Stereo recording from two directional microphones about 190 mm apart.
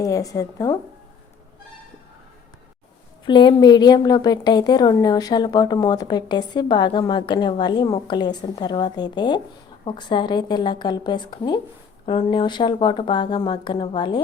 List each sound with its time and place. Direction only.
0.0 s a woman's voice: 20° left (ahead or behind)
3.2 s a woman's voice: 25° left (ahead or behind)